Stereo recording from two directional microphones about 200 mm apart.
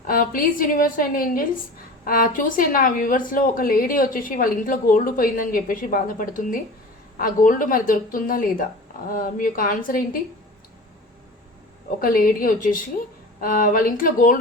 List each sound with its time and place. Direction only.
0.0 s a woman's voice: 45° left (ahead or behind)
11.9 s a woman's voice: 45° left (ahead or behind)